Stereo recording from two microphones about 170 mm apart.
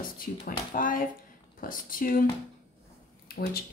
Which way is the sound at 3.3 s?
65° left (ahead or behind).